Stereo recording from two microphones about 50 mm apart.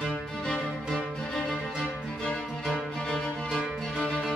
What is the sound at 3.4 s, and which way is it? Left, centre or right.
Music, centre.